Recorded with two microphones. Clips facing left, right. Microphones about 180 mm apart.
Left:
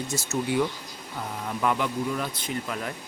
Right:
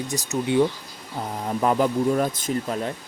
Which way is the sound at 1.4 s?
35° right (ahead or behind).